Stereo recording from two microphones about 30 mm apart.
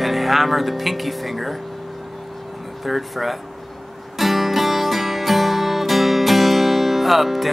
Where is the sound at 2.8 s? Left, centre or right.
Centre.